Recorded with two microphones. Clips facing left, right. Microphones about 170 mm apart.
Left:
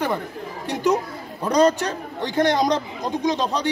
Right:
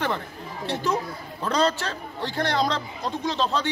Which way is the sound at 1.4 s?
15° left (ahead or behind).